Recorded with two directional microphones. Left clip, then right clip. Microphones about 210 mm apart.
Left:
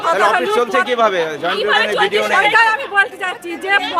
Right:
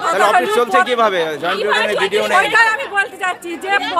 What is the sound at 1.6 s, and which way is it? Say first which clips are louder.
Speech: left 2 dB; 20° left (ahead or behind).